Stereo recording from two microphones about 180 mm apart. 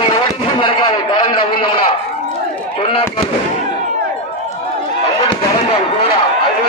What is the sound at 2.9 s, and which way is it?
Fireworks, 30° left (ahead or behind).